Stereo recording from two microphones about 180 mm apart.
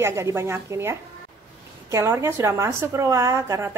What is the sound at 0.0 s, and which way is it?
A woman's voice, 15° right (ahead or behind).